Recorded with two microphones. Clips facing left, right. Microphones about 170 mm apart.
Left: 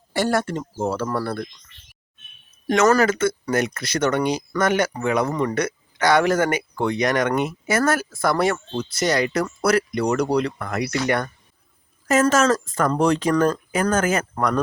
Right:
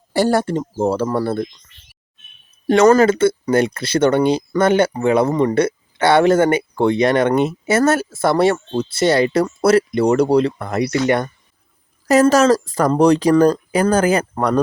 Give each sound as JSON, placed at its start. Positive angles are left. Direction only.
{"t": 0.1, "sound": "speech", "side_deg": -35}
{"t": 2.6, "sound": "speech", "side_deg": -30}
{"t": 12.0, "sound": "speech", "side_deg": -35}